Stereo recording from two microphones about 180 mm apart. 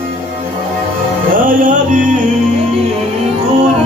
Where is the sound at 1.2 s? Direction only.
50° right (ahead or behind).